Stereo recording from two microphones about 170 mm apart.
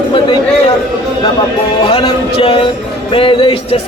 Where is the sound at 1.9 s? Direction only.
30° left (ahead or behind).